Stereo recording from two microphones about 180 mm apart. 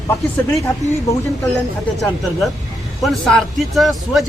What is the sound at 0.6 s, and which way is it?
Speech, 15° left (ahead or behind).